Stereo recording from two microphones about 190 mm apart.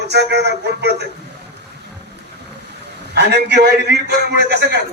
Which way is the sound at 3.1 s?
60° right (ahead or behind).